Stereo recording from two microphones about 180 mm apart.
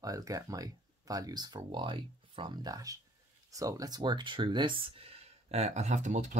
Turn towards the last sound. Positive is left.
turn(degrees=-45)  # may be behind; listen again after turning